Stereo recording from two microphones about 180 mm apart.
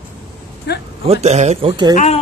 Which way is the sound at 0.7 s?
70° left (ahead or behind).